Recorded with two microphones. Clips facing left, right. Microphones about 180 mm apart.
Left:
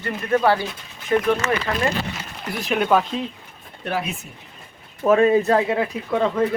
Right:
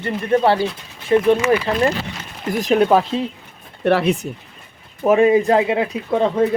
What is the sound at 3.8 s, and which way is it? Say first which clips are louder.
Speech: right 10 dB; 75° right (ahead or behind).